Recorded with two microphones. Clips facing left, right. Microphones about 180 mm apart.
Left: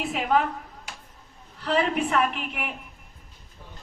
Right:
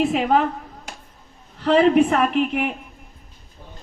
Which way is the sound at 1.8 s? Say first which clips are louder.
Right 9 dB; 40° right (ahead or behind).